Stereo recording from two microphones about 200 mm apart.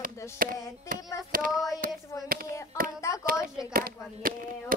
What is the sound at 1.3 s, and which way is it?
Child singing, 45° right (ahead or behind).